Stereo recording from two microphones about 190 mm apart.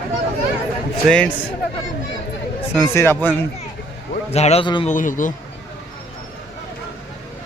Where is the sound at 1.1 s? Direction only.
5° left (ahead or behind).